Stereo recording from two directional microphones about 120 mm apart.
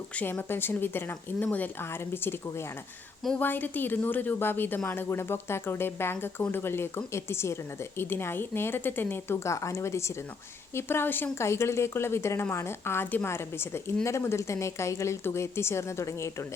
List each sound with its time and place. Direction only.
0.2 s a woman's voice: 15° left (ahead or behind)